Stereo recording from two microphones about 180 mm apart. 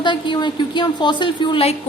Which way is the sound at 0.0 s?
25° left (ahead or behind).